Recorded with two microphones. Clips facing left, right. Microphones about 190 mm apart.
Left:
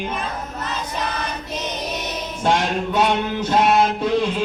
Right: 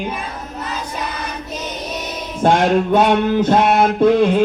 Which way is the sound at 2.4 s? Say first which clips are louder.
Right 6 dB; 50° right (ahead or behind).